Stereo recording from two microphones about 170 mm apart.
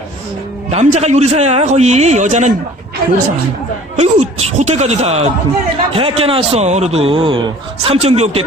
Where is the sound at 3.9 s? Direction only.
40° right (ahead or behind).